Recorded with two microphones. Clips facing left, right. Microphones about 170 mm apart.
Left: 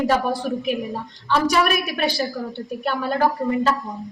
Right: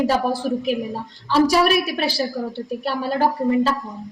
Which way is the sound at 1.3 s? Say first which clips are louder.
Right 3 dB; 35° right (ahead or behind).